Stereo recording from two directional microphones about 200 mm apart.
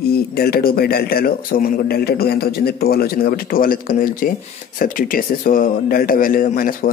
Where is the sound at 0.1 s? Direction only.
50° left (ahead or behind).